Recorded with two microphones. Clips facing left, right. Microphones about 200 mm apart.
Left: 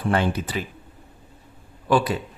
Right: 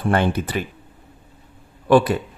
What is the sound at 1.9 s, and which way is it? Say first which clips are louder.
Speech: right 6 dB; 55° right (ahead or behind).